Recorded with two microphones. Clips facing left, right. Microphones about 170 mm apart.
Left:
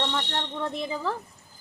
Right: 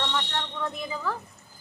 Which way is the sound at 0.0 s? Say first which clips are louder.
Left 1 dB; 30° left (ahead or behind).